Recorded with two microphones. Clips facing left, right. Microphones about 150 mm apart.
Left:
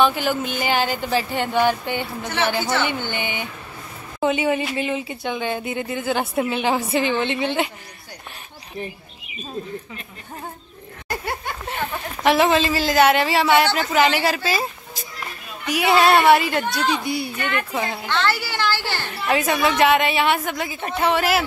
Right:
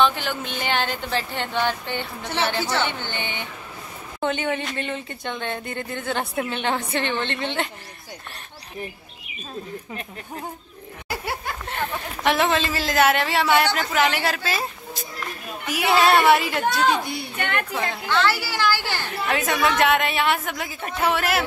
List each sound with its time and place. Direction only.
0.0 s speech: 10° left (ahead or behind)
11.1 s speech: 5° right (ahead or behind)
17.4 s speech: 60° right (ahead or behind)
17.7 s speech: 5° left (ahead or behind)
18.0 s speech: 5° right (ahead or behind)
19.2 s speech: centre (ahead or behind)